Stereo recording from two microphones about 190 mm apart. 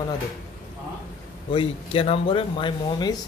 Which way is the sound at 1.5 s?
30° left (ahead or behind).